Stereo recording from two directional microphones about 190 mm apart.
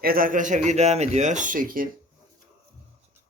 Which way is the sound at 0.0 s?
50° right (ahead or behind).